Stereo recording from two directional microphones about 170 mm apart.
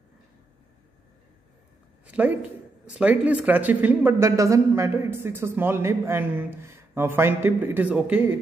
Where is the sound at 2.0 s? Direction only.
10° right (ahead or behind).